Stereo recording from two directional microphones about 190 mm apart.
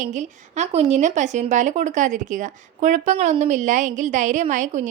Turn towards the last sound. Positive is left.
turn(degrees=-40)  # may be behind; listen again after turning